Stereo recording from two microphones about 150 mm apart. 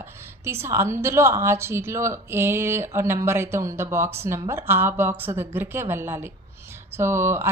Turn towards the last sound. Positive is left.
turn(degrees=-15)  # may be behind; listen again after turning